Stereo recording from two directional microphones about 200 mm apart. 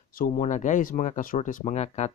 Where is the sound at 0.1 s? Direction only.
45° left (ahead or behind).